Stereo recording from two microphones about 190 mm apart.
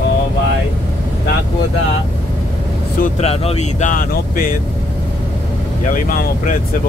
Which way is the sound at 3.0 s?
35° left (ahead or behind).